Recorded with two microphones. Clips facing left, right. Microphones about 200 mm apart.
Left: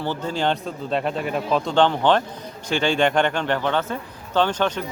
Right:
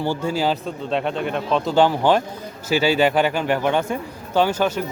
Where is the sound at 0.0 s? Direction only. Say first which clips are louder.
Right 2 dB; 10° right (ahead or behind).